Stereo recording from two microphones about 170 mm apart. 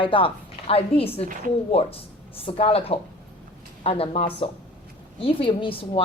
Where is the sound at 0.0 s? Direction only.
30° left (ahead or behind).